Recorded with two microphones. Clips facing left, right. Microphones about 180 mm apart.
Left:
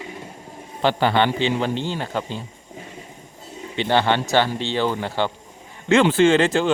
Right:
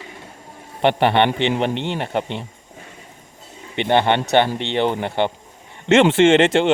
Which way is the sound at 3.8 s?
20° right (ahead or behind).